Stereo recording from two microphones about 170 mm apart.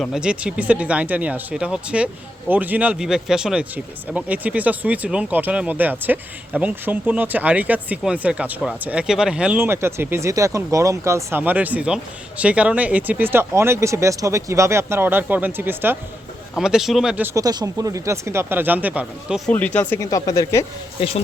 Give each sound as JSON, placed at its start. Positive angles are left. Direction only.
{"t": 0.0, "sound": "speech", "side_deg": -5}
{"t": 19.5, "sound": "speech", "side_deg": 10}
{"t": 21.0, "sound": "speech", "side_deg": 30}